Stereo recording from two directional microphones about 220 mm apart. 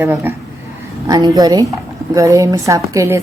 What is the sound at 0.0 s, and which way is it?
Speech, 10° right (ahead or behind).